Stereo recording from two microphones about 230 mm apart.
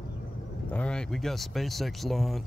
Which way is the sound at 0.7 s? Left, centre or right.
Centre.